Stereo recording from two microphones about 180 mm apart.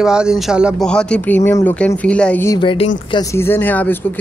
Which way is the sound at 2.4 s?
25° left (ahead or behind).